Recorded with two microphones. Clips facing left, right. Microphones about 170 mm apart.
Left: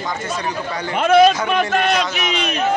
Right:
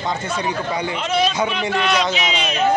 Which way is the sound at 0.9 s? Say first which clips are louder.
Left 11 dB; 55° left (ahead or behind).